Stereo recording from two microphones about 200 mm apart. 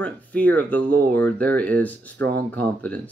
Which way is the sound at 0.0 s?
10° left (ahead or behind).